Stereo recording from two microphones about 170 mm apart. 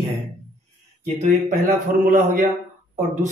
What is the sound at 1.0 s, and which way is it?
Speech, 45° right (ahead or behind).